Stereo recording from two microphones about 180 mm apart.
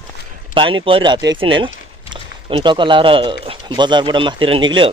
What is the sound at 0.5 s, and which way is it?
Speech, 30° right (ahead or behind).